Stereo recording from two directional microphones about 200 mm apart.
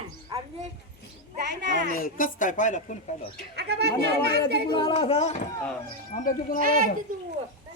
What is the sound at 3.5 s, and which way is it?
Speech, 55° right (ahead or behind).